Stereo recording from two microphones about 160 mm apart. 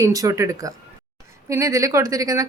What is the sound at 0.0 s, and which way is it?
A woman's voice, 20° right (ahead or behind).